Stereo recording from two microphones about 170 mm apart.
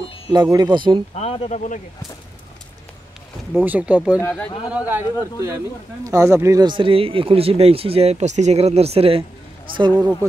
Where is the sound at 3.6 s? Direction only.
10° right (ahead or behind); by 9.2 s 35° right (ahead or behind).